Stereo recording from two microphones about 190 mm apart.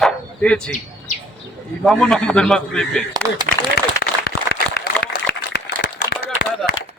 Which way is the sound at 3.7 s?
55° left (ahead or behind).